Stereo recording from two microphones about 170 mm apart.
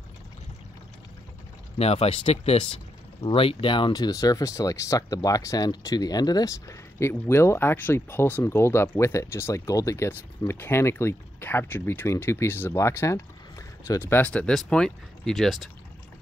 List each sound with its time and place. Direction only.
1.8 s speech: 35° left (ahead or behind); by 15.7 s centre (ahead or behind)